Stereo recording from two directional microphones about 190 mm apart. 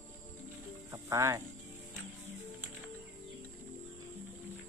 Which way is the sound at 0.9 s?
15° right (ahead or behind).